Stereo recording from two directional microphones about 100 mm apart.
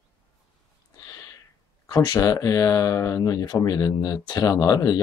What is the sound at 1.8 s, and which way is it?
Speech, 40° left (ahead or behind).